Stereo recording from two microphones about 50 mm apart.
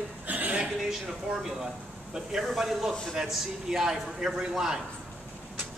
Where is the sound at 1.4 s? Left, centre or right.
Centre.